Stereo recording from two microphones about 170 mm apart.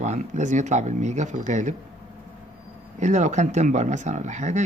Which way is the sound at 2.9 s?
45° right (ahead or behind).